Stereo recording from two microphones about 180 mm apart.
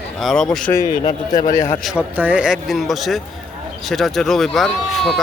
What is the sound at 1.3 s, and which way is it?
Speech, 50° left (ahead or behind).